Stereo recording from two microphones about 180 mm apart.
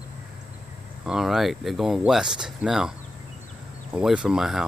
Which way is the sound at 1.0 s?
5° right (ahead or behind).